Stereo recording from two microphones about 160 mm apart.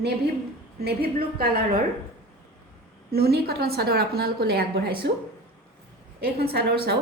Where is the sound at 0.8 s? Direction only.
80° right.